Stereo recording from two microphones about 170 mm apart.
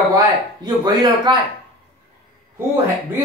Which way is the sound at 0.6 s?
25° right (ahead or behind).